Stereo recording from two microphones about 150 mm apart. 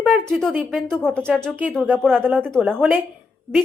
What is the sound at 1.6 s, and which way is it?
Speech, 10° right (ahead or behind).